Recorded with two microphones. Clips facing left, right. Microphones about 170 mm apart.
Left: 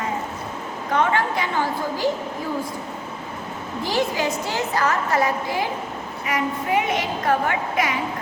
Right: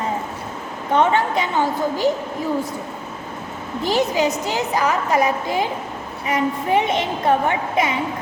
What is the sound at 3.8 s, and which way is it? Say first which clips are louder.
A woman's voice: right 4 dB; 20° right (ahead or behind).